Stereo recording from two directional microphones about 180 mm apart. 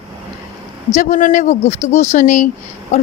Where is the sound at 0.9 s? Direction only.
45° left (ahead or behind).